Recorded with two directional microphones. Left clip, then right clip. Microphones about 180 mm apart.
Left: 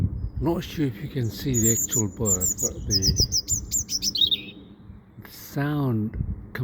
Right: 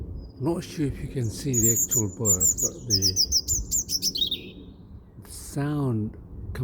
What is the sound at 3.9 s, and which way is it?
Chirp, 30° right (ahead or behind).